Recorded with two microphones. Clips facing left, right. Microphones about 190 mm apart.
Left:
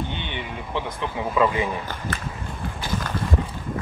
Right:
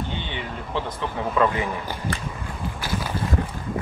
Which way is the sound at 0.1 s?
20° left (ahead or behind).